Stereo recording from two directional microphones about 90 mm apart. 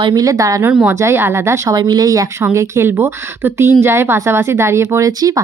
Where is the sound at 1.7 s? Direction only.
50° right (ahead or behind).